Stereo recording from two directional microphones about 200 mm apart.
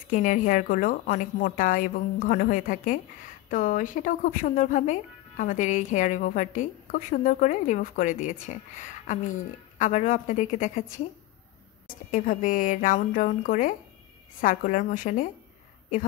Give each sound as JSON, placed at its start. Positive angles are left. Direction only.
{"t": 0.1, "sound": "speech", "side_deg": 40}
{"t": 12.1, "sound": "a woman's voice", "side_deg": 40}